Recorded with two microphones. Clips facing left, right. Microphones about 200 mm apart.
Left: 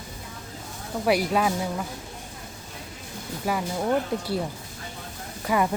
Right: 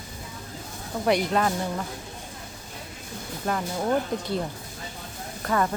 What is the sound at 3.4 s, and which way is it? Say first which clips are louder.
Speech: left 1 dB; 10° left (ahead or behind).